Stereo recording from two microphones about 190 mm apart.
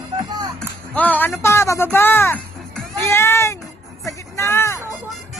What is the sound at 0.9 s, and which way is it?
Speech, 10° left (ahead or behind).